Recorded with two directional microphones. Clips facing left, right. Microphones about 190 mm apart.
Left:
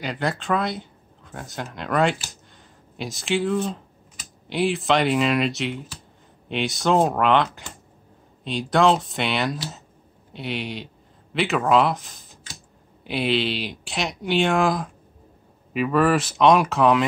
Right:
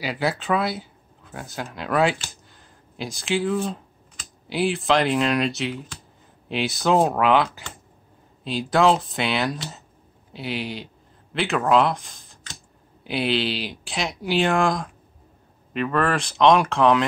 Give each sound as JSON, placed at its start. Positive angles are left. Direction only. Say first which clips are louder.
{"t": 0.0, "sound": "speech", "louder": "right 1 dB", "side_deg": -5}